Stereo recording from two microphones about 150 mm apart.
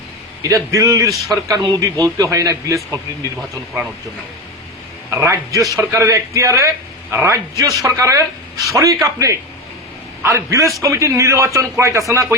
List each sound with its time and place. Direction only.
0.4 s a man's voice: 20° right (ahead or behind)
5.1 s a man's voice: 20° right (ahead or behind)